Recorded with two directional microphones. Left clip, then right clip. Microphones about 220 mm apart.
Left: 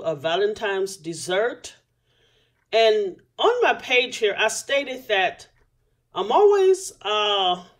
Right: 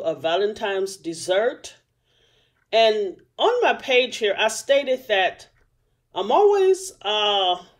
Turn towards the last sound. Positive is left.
turn(degrees=-5)  # may be behind; listen again after turning